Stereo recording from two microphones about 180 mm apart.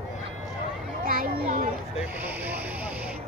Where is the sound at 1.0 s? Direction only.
50° right (ahead or behind).